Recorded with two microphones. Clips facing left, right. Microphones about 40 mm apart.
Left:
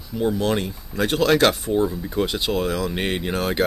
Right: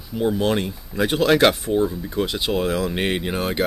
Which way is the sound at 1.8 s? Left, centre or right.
Centre.